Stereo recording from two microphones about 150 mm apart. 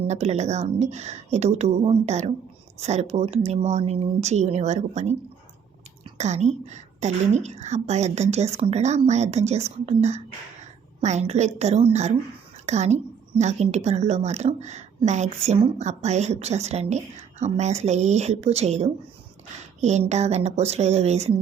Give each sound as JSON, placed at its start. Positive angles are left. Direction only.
{"t": 0.1, "sound": "a woman's voice", "side_deg": -45}
{"t": 6.1, "sound": "a woman's voice", "side_deg": -50}